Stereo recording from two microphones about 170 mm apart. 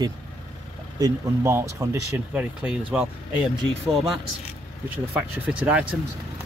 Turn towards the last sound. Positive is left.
turn(degrees=-5)  # may be behind; listen again after turning